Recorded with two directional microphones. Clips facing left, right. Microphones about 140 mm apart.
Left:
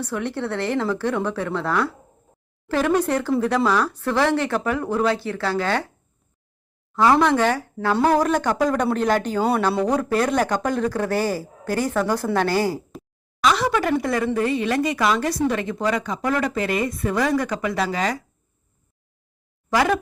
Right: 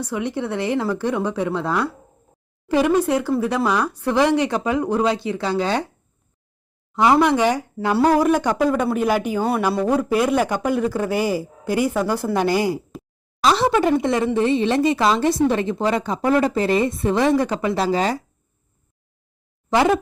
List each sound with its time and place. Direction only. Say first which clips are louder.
0.0 s a man's voice: right 2 dB; 15° right (ahead or behind)
6.9 s a man's voice: right 1 dB; 15° right (ahead or behind)
13.4 s speech: right 3 dB; 30° right (ahead or behind)
19.7 s speech: right 3 dB; 25° right (ahead or behind)